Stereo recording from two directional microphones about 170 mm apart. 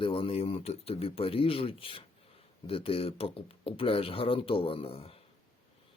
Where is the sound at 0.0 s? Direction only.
30° left (ahead or behind).